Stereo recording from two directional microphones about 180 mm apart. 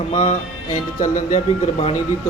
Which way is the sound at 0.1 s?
30° left (ahead or behind).